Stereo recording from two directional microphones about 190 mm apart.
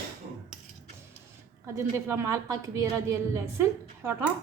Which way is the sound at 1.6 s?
15° right (ahead or behind).